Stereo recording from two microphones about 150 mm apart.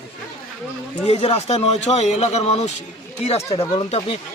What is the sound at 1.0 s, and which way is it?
Speech, 45° left (ahead or behind).